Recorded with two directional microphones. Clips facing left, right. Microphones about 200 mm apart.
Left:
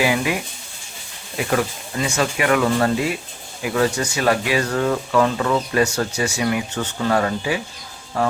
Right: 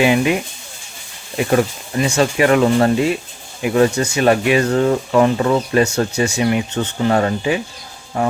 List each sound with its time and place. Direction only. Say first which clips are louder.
0.0 s speech: right 5 dB; 25° right (ahead or behind)
2.0 s speech: right 6 dB; 30° right (ahead or behind)